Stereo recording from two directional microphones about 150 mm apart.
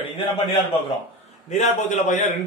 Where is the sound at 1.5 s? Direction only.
50° left (ahead or behind).